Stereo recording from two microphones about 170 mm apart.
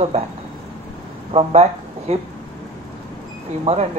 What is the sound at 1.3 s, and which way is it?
Speech, 35° right (ahead or behind).